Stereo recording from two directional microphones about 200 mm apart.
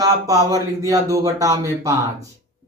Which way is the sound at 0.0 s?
15° right (ahead or behind).